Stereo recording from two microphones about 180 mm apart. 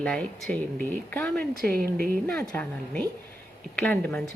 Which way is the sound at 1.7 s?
60° right (ahead or behind).